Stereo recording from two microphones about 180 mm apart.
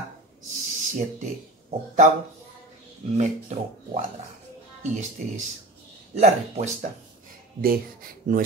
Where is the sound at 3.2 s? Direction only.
35° right (ahead or behind).